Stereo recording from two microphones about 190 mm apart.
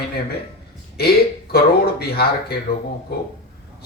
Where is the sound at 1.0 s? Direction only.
55° left (ahead or behind).